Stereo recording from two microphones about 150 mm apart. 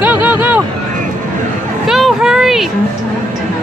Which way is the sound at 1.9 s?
Centre (ahead or behind).